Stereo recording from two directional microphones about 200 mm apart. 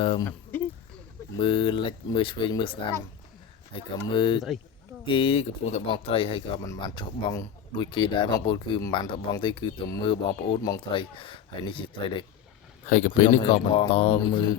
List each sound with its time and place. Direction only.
0.0 s speech: 25° left (ahead or behind)
0.3 s a sound: 10° left (ahead or behind)
1.4 s speech: 25° left (ahead or behind)
12.9 s speech: 40° left (ahead or behind)
13.4 s speech: 25° left (ahead or behind)